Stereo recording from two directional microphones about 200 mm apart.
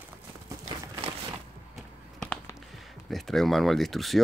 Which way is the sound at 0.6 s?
30° right (ahead or behind).